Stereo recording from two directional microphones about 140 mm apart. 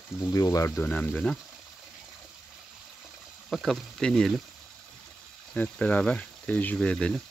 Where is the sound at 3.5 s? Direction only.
Centre (ahead or behind).